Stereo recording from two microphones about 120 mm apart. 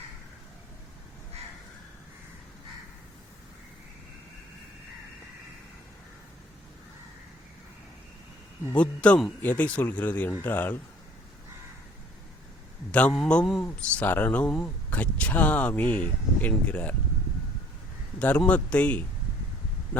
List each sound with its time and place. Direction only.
8.7 s speech: 10° left (ahead or behind)
12.9 s speech: 10° left (ahead or behind)
18.2 s speech: 10° left (ahead or behind)
19.9 s a sound: 10° left (ahead or behind)